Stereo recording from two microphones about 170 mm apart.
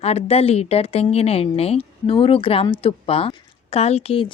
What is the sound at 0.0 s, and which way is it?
A woman's voice, 35° left (ahead or behind).